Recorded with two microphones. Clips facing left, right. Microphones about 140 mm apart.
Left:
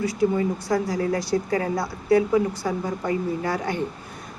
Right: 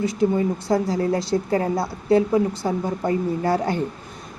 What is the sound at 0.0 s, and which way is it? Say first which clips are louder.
A woman's voice: right 2 dB; 25° right (ahead or behind).